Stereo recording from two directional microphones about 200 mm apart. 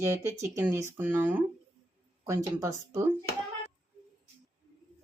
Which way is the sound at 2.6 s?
15° right (ahead or behind).